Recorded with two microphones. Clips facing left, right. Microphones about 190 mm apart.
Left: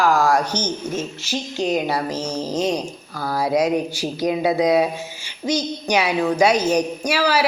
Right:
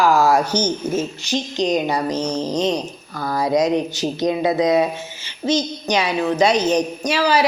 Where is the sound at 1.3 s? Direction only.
5° left (ahead or behind).